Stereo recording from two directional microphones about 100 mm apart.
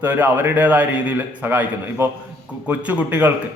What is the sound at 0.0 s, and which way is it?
A man's voice, 20° right (ahead or behind).